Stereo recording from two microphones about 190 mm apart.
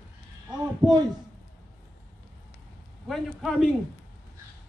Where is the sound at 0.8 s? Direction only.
25° right (ahead or behind).